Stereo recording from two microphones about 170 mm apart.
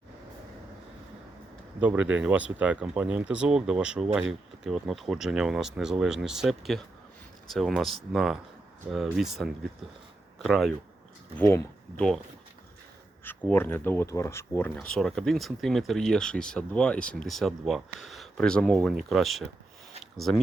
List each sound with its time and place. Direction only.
1.8 s speech: 10° right (ahead or behind)
11.3 s speech: 10° left (ahead or behind)
13.2 s speech: 10° left (ahead or behind)